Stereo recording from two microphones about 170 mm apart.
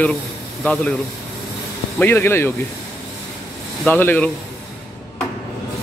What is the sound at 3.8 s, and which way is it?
Speech, 10° left (ahead or behind).